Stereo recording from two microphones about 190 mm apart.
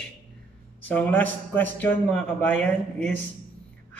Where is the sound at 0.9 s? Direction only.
10° left (ahead or behind).